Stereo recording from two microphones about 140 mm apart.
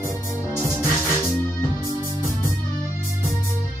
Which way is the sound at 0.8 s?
15° left (ahead or behind).